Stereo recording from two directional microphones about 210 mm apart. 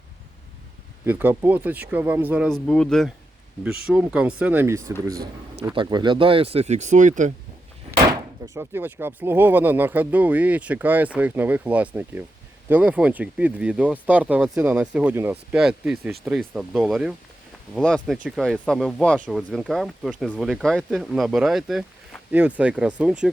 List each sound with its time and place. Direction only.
1.0 s speech: 10° right (ahead or behind)
2.5 s speech: 5° left (ahead or behind); by 7.3 s 35° right (ahead or behind)
7.9 s speech: 15° right (ahead or behind)